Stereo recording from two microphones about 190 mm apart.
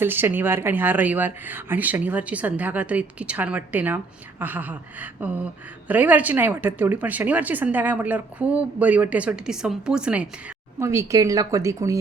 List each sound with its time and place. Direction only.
0.0 s speech: 10° right (ahead or behind)